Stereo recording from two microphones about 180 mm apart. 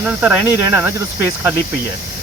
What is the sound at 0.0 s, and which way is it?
Speech, 5° right (ahead or behind).